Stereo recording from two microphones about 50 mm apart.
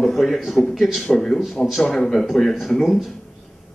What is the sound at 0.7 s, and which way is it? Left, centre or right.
Speech, centre.